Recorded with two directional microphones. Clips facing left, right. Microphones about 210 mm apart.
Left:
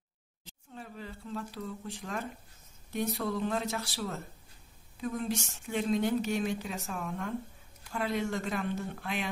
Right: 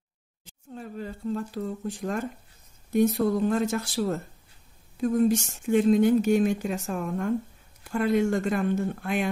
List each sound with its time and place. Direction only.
0.7 s speech: 45° right (ahead or behind)